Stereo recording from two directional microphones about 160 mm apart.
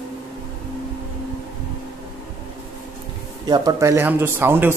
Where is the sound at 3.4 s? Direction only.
25° right (ahead or behind).